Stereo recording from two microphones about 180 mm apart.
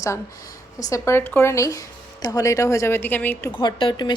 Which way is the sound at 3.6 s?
25° left (ahead or behind).